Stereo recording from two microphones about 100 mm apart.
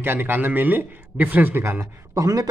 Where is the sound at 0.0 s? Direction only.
20° right (ahead or behind).